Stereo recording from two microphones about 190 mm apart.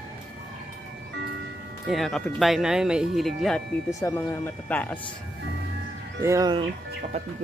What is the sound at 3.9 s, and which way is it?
Speech, 15° left (ahead or behind).